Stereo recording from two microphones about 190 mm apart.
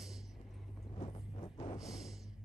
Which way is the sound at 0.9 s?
25° left (ahead or behind).